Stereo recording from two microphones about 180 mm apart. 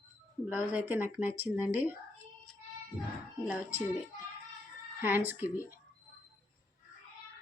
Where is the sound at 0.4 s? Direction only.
5° right (ahead or behind).